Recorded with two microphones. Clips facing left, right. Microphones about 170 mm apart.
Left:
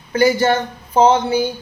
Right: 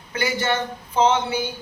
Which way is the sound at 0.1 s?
40° left (ahead or behind).